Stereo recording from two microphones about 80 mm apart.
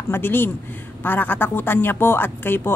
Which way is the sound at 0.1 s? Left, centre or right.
Left.